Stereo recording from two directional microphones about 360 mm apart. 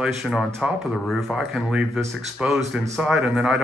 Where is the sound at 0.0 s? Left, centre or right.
Centre.